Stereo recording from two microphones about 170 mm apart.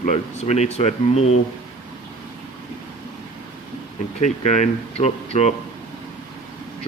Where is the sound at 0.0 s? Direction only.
45° left (ahead or behind).